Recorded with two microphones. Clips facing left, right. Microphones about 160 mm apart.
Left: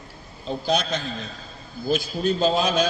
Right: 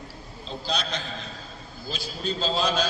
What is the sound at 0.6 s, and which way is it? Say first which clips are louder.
A man's voice: left 6 dB; 50° left (ahead or behind).